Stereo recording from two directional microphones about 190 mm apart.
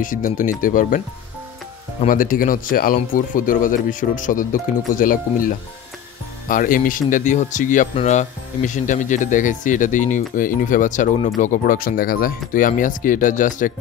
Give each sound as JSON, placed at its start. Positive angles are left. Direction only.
{"t": 0.0, "sound": "speech", "side_deg": 45}
{"t": 2.0, "sound": "speech", "side_deg": 45}